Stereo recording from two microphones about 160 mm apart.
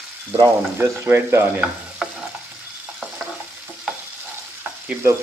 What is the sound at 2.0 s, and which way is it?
Stir, centre (ahead or behind).